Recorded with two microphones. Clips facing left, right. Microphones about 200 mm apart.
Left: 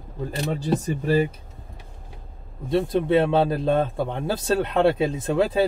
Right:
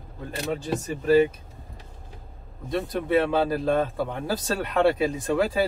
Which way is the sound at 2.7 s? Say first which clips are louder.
Left 4 dB; 25° left (ahead or behind).